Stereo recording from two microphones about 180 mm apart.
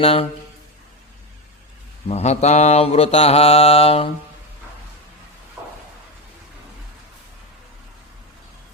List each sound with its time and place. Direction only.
0.0 s mantra: 35° left (ahead or behind)
2.0 s mantra: 35° left (ahead or behind)